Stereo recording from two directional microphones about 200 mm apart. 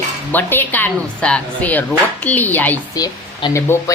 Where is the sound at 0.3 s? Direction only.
10° left (ahead or behind).